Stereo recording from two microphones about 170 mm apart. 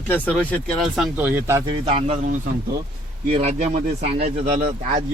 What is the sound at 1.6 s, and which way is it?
Speech, 35° right (ahead or behind).